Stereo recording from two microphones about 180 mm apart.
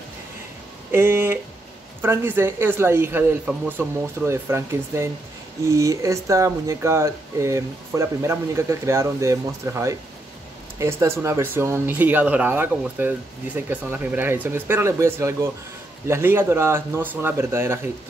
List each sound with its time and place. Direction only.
0.9 s speech: 15° right (ahead or behind)